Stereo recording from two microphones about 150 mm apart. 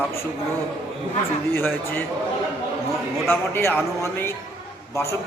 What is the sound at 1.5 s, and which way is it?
Speech, 15° left (ahead or behind).